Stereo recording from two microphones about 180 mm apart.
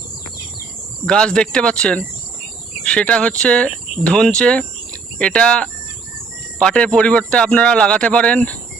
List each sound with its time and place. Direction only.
1.0 s a man's voice: 5° left (ahead or behind)